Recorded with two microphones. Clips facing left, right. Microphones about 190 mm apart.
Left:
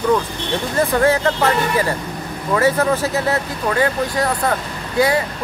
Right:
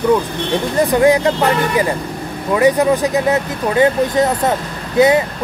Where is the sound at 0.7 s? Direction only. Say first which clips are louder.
Right 4 dB; 15° right (ahead or behind).